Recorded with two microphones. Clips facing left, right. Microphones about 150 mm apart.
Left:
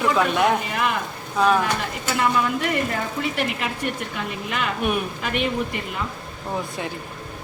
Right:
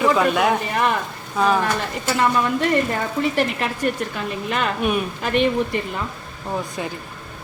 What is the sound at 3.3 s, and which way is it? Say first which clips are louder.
A man's voice: right 4 dB; 35° right (ahead or behind).